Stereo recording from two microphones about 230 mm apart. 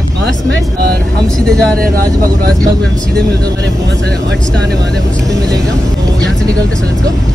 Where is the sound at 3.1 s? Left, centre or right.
Centre.